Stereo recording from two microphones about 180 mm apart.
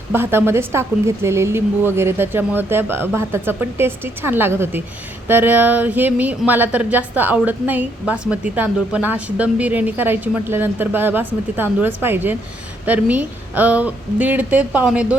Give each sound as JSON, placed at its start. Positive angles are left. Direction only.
{"t": 0.1, "sound": "speech", "side_deg": -10}